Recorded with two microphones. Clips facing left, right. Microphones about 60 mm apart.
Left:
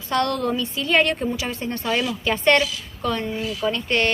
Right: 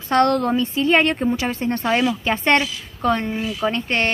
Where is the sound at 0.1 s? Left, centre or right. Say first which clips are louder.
Right 5 dB; right.